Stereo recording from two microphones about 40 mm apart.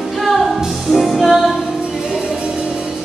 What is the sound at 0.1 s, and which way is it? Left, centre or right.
Music, centre.